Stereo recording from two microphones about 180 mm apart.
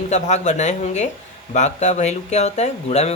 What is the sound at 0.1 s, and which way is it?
Speech, 40° left (ahead or behind).